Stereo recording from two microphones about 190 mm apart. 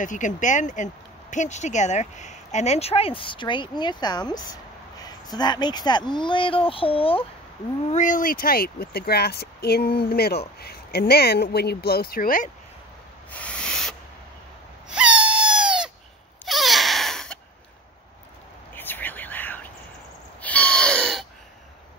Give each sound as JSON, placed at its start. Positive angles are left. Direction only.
{"t": 0.0, "sound": "speech", "side_deg": 40}
{"t": 7.9, "sound": "speech", "side_deg": 40}
{"t": 13.3, "sound": "owl", "side_deg": 5}
{"t": 14.9, "sound": "a sound", "side_deg": -5}
{"t": 18.8, "sound": "whispering", "side_deg": 10}
{"t": 20.4, "sound": "gasp", "side_deg": 5}